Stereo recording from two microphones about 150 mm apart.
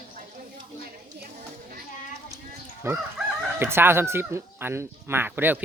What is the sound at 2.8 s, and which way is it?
Speech, 20° right (ahead or behind).